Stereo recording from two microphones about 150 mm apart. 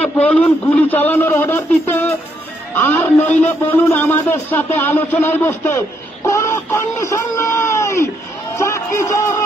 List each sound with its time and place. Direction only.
0.0 s a man's voice: 10° left (ahead or behind)